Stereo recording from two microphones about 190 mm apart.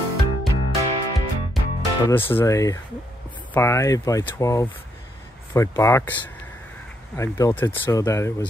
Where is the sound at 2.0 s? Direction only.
10° left (ahead or behind).